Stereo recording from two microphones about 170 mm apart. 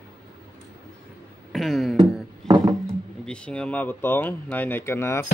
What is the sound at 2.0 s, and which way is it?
Music, 20° right (ahead or behind).